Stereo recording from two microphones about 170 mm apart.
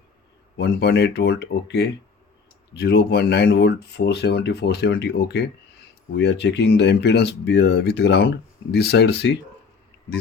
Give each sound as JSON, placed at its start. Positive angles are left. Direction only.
{"t": 0.6, "sound": "speech", "side_deg": 75}